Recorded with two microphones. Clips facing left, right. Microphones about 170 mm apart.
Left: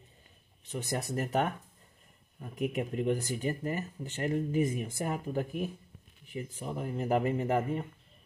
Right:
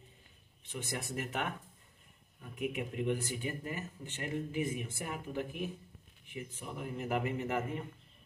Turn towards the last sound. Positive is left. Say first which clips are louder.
# left 6 dB
turn(degrees=40)  # may be behind; listen again after turning